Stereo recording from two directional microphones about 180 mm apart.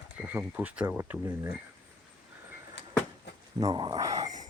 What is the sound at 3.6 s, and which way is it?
Speech, 25° right (ahead or behind).